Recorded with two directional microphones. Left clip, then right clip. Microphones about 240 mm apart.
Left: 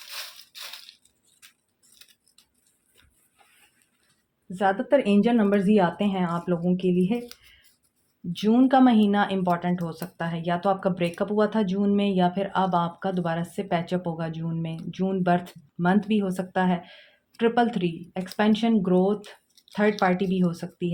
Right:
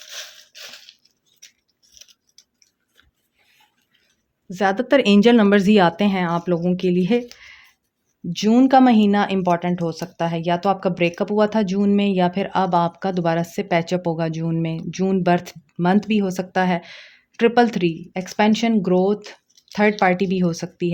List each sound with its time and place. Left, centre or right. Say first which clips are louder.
4.4 s speech: right 4 dB; right
8.3 s speech: right 5 dB; right